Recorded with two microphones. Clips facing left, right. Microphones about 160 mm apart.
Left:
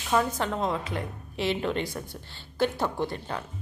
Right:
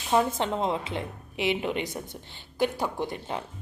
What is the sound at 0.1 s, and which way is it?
A woman's voice, 25° right (ahead or behind).